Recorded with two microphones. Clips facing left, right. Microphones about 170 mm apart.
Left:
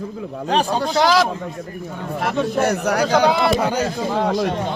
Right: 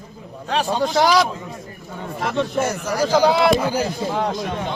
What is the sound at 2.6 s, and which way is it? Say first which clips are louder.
Speech: left 5 dB; 65° left (ahead or behind).